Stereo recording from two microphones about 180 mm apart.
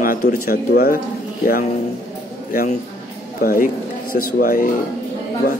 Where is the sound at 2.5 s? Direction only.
55° left (ahead or behind).